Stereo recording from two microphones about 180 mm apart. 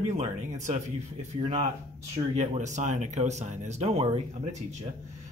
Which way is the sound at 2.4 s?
40° right (ahead or behind).